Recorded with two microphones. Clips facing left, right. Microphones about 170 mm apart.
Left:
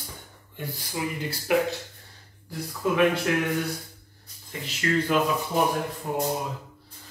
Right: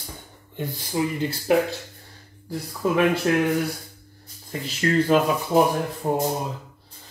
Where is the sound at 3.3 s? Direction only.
35° right (ahead or behind).